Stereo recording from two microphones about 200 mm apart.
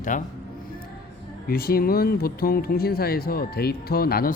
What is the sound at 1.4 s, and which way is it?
Speech, 50° left (ahead or behind).